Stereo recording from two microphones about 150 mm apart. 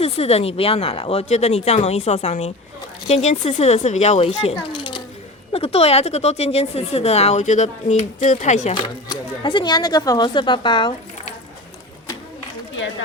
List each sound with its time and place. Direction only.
0.0 s speech: 45° left (ahead or behind)
4.8 s coin: 30° left (ahead or behind)
5.5 s speech: 40° left (ahead or behind)
8.7 s speech: 30° left (ahead or behind)